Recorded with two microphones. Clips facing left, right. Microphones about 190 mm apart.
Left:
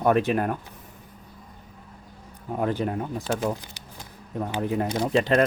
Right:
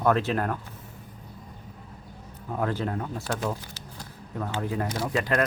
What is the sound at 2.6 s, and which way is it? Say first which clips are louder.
Speech: left 3 dB; 15° left (ahead or behind).